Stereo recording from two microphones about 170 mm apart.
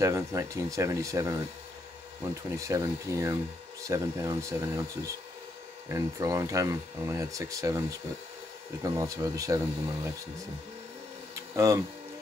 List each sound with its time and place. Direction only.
0.0 s speech: 20° right (ahead or behind)
8.8 s speech: 20° right (ahead or behind)
11.3 s a sound: 15° right (ahead or behind)